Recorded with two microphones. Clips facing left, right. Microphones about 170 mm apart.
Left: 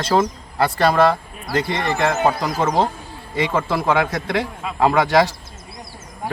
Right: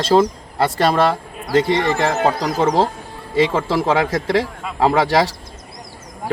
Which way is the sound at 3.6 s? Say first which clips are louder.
Right 2 dB; 30° right (ahead or behind).